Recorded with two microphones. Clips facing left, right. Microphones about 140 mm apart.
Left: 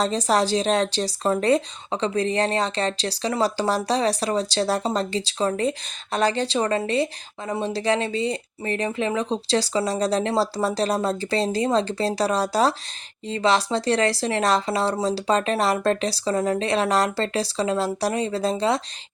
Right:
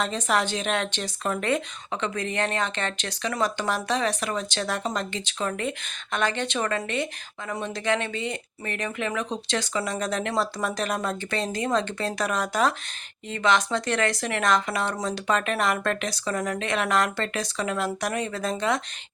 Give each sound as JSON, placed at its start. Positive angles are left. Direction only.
{"t": 0.0, "sound": "speech", "side_deg": 35}